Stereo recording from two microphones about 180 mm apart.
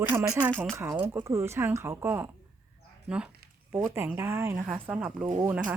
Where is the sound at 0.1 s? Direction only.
15° right (ahead or behind).